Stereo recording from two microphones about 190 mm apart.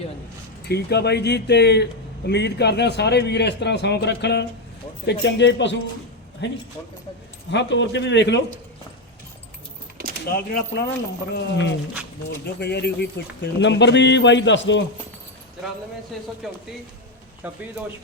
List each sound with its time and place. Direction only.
0.7 s a man's voice: 60° left (ahead or behind)
10.3 s speech: 55° left (ahead or behind)
11.4 s speech: 70° left (ahead or behind)
16.1 s speech: centre (ahead or behind)
17.4 s speech: 10° right (ahead or behind)